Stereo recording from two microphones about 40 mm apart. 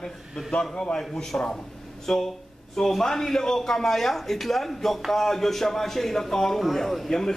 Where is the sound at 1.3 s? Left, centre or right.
Left.